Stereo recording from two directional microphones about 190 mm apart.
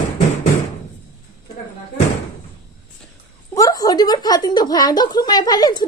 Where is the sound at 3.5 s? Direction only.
20° left (ahead or behind).